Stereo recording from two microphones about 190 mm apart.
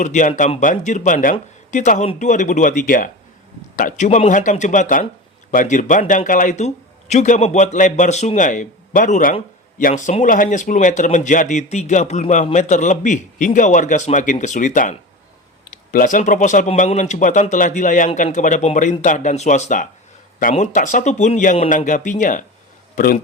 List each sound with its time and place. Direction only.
0.0 s a man's voice: 40° left (ahead or behind)